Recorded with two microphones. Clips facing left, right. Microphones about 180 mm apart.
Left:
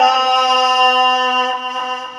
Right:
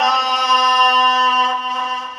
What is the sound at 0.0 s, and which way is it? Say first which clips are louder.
Music: left 6 dB; 45° left (ahead or behind).